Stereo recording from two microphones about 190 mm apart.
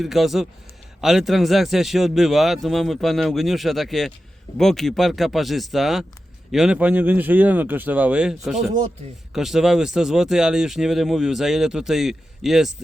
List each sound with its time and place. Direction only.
0.0 s a man's voice: centre (ahead or behind)